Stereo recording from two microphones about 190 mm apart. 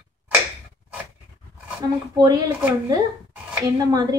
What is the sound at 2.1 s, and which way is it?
A woman's voice, 20° right (ahead or behind).